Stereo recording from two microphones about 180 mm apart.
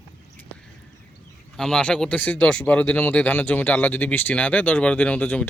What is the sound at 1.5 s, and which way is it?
Speech, 5° left (ahead or behind).